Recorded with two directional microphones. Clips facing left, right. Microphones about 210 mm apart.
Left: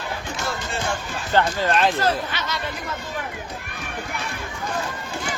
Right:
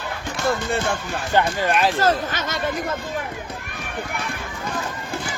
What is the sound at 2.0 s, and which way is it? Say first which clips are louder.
Speech: right 3 dB; 45° right (ahead or behind).